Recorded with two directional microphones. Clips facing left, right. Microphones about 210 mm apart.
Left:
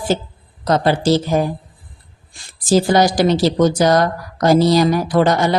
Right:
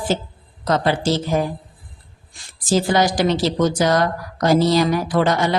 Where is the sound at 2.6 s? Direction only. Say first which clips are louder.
Left 4 dB; 40° left (ahead or behind).